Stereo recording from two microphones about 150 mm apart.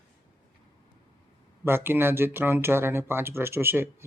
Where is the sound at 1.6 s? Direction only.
15° right (ahead or behind).